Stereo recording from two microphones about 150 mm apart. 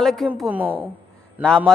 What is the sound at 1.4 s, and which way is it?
Speech, 5° left (ahead or behind).